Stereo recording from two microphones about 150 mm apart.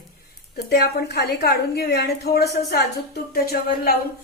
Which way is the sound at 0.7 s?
90° left.